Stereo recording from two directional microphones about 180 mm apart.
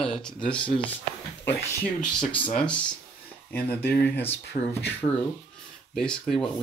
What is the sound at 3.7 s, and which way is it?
Speech, 10° left (ahead or behind).